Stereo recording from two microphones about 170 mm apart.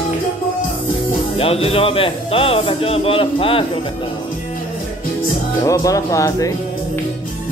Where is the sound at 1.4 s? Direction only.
35° left (ahead or behind).